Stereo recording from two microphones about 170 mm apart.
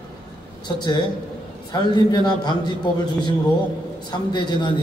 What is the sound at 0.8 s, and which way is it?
A man's voice, 25° left (ahead or behind).